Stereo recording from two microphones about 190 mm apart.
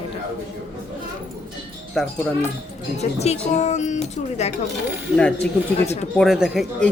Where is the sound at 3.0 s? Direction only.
35° left (ahead or behind).